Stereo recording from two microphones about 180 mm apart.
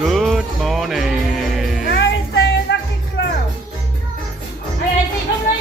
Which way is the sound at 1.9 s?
75° left (ahead or behind).